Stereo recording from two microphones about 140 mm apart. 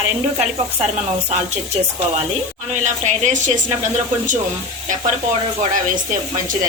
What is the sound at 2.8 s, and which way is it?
Speech, 60° right (ahead or behind).